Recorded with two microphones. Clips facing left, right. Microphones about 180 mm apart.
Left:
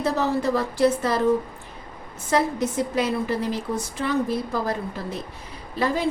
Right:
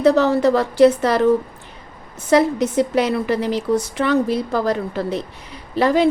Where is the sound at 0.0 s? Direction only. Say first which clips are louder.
Right 8 dB; 80° right.